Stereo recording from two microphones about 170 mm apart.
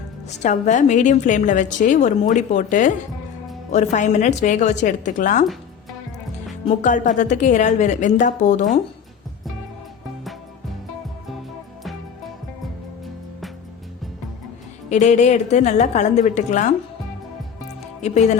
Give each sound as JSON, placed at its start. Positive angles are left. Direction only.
{"t": 0.3, "sound": "a woman's voice", "side_deg": 45}
{"t": 6.8, "sound": "a woman's voice", "side_deg": 45}
{"t": 14.8, "sound": "a woman's voice", "side_deg": 45}
{"t": 18.0, "sound": "a woman's voice", "side_deg": 45}